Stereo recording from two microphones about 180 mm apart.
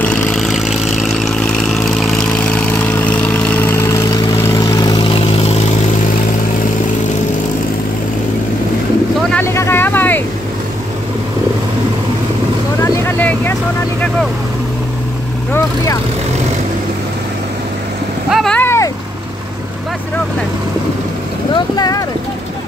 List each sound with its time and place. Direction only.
0.0 s vehicle: 5° left (ahead or behind); by 5.6 s 35° left (ahead or behind)
9.3 s vehicle: 15° left (ahead or behind)
12.8 s vehicle: 15° left (ahead or behind)
15.5 s vehicle: 20° left (ahead or behind)
18.3 s vehicle: 5° left (ahead or behind)
21.7 s vehicle: 20° left (ahead or behind)